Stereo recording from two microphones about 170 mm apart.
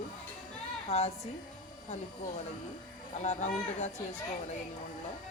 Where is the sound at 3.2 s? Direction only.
45° left (ahead or behind).